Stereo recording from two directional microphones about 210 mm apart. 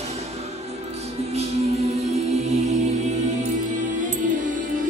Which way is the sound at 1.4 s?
30° right (ahead or behind).